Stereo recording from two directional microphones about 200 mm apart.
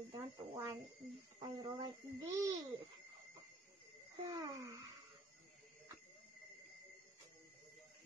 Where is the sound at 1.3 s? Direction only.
15° right (ahead or behind).